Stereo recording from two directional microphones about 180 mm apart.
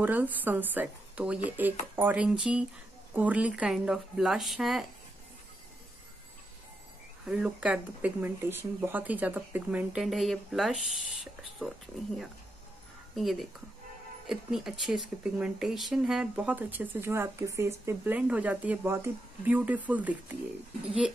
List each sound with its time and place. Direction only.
0.0 s speech: 10° right (ahead or behind)
7.2 s speech: 5° right (ahead or behind)
13.1 s speech: centre (ahead or behind)